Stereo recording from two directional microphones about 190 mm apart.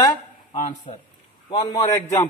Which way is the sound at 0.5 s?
40° left (ahead or behind).